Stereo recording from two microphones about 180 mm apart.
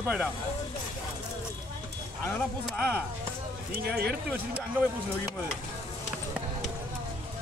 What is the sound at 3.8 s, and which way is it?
Speech, 60° right (ahead or behind).